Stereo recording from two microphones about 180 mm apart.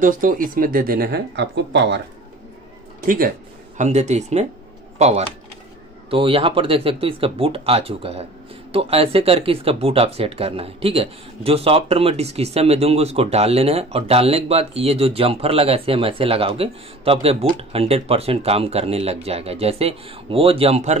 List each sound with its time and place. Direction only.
0.0 s speech: 50° right (ahead or behind); by 2.0 s 75° right (ahead or behind)
3.1 s speech: 50° right (ahead or behind)